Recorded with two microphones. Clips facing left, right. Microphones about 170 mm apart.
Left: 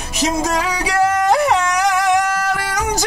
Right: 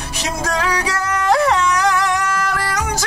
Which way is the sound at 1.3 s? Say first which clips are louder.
Even; 15° left (ahead or behind).